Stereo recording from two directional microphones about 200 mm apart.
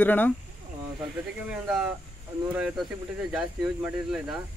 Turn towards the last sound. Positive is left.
turn(degrees=-5)  # may be behind; listen again after turning